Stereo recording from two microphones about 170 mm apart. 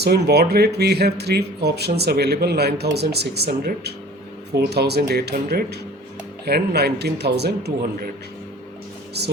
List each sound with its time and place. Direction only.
0.0 s speech: 75° right (ahead or behind)